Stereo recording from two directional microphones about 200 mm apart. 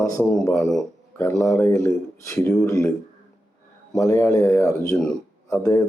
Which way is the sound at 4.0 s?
15° left (ahead or behind).